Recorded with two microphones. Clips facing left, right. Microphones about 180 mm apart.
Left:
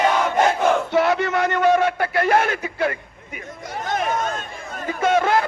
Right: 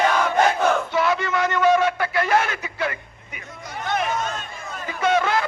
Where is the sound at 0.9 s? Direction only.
60° left (ahead or behind).